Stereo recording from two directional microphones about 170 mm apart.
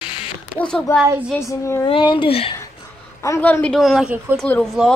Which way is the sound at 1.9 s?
25° left (ahead or behind).